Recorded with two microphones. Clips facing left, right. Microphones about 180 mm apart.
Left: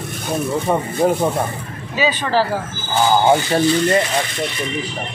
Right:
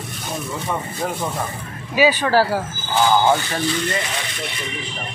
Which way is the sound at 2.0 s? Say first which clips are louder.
Right 2 dB; 10° right (ahead or behind).